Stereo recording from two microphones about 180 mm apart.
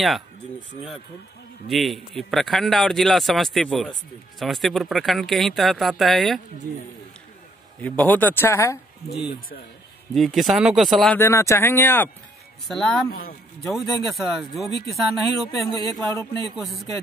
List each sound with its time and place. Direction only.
1.7 s a man's voice: centre (ahead or behind)
7.8 s speech: 10° left (ahead or behind)
10.1 s a man's voice: centre (ahead or behind)
11.1 s speech: 15° left (ahead or behind)
12.6 s a man's voice: centre (ahead or behind)
15.7 s speech: 20° left (ahead or behind)
16.4 s a man's voice: centre (ahead or behind)